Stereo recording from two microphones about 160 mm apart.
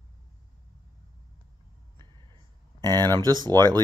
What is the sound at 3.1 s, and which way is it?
Speech, 25° right (ahead or behind).